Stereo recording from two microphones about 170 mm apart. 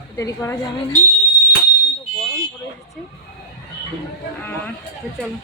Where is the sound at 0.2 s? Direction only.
15° left (ahead or behind).